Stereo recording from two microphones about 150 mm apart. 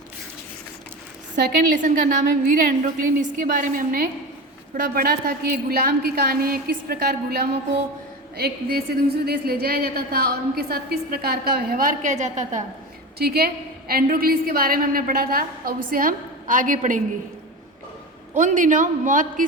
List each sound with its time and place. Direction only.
1.7 s a woman's voice: 60° right (ahead or behind)
13.1 s a woman's voice: 90° right; by 17.0 s 60° right (ahead or behind)
18.3 s a woman's voice: 60° right (ahead or behind)